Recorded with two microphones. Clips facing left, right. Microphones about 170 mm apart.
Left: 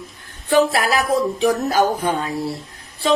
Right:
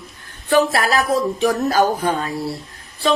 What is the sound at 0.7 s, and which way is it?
Speech, 20° left (ahead or behind).